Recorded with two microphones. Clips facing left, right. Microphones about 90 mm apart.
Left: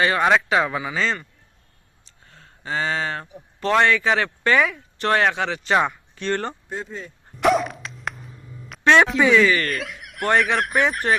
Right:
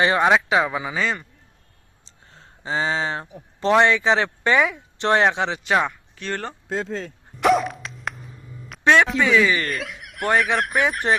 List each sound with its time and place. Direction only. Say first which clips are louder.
0.0 s a man's voice: right 1 dB; 20° right (ahead or behind)
2.0 s speech: right 1 dB; 25° right (ahead or behind)
5.8 s speech: left 3 dB; centre (ahead or behind)
6.7 s speech: right 5 dB; 90° right
7.3 s dog: right 1 dB; centre (ahead or behind)
9.0 s speech: left 4 dB; 5° left (ahead or behind)
9.4 s a man's voice: left 2 dB; 15° right (ahead or behind)
9.6 s speech: left 1 dB; centre (ahead or behind)